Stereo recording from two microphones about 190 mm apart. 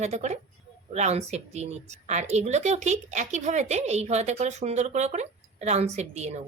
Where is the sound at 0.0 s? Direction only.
35° right (ahead or behind).